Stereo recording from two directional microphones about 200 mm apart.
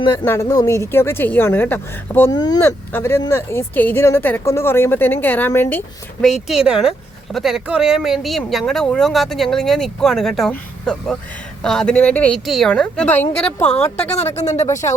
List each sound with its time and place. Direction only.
0.3 s speech: 15° left (ahead or behind)
6.5 s speech: 5° right (ahead or behind)
14.2 s speech: 35° left (ahead or behind)